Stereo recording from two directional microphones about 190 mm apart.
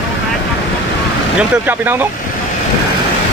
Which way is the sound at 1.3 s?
10° right (ahead or behind).